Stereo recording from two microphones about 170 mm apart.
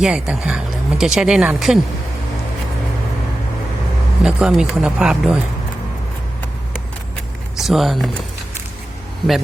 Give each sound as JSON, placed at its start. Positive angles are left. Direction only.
{"t": 0.0, "sound": "speech", "side_deg": -5}
{"t": 4.2, "sound": "speech", "side_deg": -5}
{"t": 7.5, "sound": "speech", "side_deg": 0}